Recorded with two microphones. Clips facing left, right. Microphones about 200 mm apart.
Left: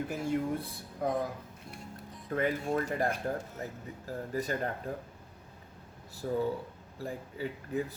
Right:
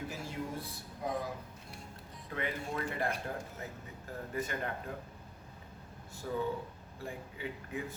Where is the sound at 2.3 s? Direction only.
40° left (ahead or behind).